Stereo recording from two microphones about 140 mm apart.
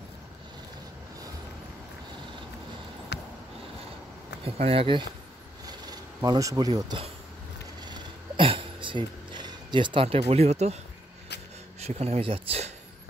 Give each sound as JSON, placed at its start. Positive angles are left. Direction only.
{"t": 4.6, "sound": "speech", "side_deg": -45}
{"t": 5.7, "sound": "speech", "side_deg": -30}
{"t": 7.8, "sound": "a sound", "side_deg": -35}
{"t": 11.8, "sound": "speech", "side_deg": -50}